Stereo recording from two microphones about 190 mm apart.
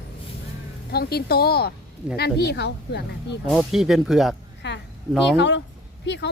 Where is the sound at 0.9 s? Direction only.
55° left (ahead or behind).